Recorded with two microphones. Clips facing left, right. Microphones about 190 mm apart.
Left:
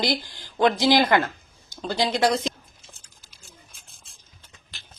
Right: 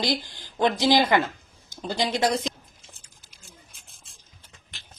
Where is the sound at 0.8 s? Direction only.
15° right (ahead or behind).